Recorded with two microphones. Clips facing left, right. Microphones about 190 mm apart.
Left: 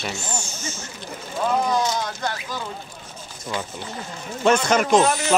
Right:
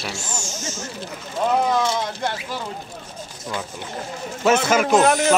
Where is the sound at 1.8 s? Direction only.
25° right (ahead or behind).